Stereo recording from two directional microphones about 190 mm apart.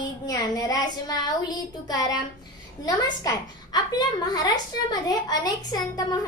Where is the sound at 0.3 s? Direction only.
20° left (ahead or behind).